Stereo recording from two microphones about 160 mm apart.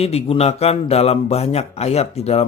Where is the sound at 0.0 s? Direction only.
40° left (ahead or behind).